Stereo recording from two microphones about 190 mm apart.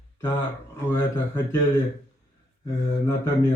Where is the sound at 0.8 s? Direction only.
10° left (ahead or behind).